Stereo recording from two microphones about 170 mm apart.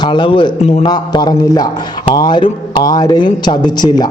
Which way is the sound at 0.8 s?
25° left (ahead or behind).